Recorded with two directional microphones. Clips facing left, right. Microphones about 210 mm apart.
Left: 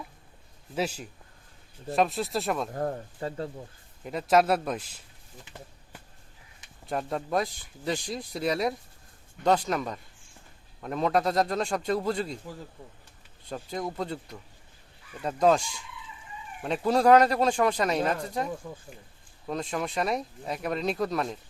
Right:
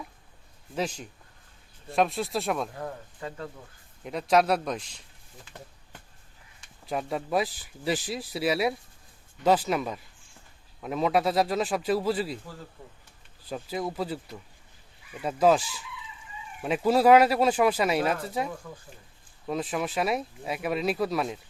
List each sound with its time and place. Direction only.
0.8 s speech: 5° left (ahead or behind)
2.7 s speech: 40° left (ahead or behind)
4.0 s speech: centre (ahead or behind)
6.8 s speech: 5° right (ahead or behind)
13.4 s speech: 5° right (ahead or behind)
18.6 s speech: 20° left (ahead or behind)
19.5 s speech: 5° right (ahead or behind)